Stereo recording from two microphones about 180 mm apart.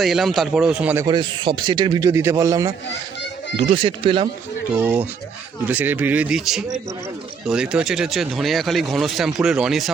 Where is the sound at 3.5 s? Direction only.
30° right (ahead or behind).